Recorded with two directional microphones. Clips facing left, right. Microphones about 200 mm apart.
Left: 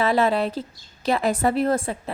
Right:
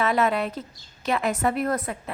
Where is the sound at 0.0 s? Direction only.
30° left (ahead or behind).